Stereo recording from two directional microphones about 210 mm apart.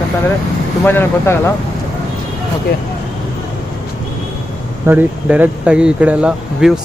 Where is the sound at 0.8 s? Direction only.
10° left (ahead or behind).